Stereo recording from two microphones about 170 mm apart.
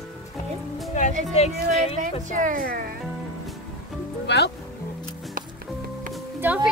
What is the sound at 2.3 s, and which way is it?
Speech, 50° right (ahead or behind).